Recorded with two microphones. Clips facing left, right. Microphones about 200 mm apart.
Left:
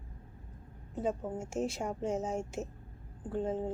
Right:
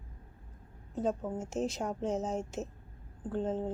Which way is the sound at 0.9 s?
10° left (ahead or behind).